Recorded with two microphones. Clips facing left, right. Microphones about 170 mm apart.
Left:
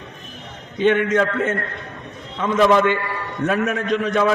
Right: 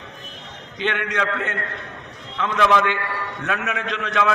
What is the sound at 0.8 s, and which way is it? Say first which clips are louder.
A man's voice: left 8 dB; 45° left (ahead or behind).